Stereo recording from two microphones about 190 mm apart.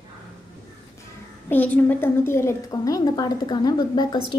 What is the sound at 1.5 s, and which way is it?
A woman's voice, 10° left (ahead or behind).